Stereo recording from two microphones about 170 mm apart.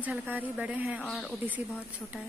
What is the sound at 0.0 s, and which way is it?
A woman's voice, 10° right (ahead or behind).